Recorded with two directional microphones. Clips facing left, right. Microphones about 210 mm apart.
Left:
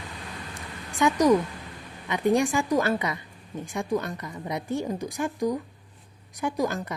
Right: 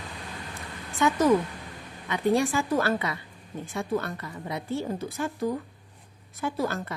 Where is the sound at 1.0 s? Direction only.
15° left (ahead or behind).